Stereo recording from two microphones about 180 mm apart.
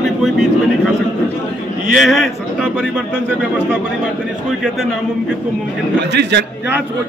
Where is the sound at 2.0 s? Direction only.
Centre (ahead or behind).